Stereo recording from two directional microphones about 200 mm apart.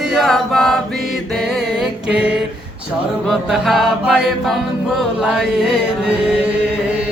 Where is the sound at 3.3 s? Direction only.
Centre (ahead or behind).